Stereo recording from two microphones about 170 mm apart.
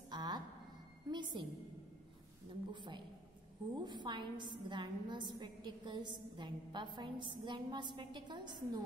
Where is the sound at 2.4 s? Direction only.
30° right (ahead or behind).